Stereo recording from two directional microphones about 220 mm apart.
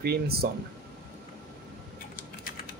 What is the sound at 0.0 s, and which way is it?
Speech, 45° right (ahead or behind).